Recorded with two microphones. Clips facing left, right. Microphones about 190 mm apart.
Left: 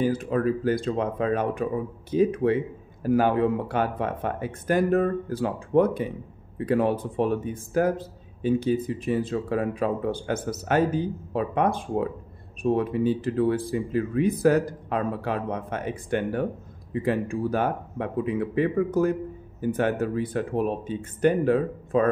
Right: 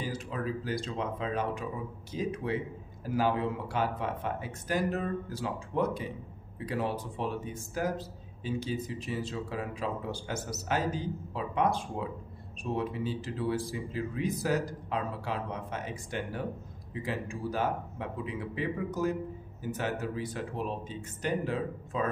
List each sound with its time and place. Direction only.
0.0 s speech: 55° left (ahead or behind)